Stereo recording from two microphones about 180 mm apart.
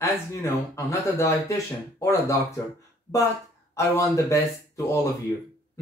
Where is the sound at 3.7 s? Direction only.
15° left (ahead or behind).